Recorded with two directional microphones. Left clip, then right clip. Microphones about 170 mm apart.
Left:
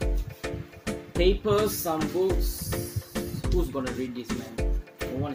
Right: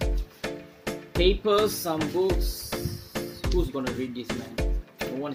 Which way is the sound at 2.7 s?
Centre (ahead or behind).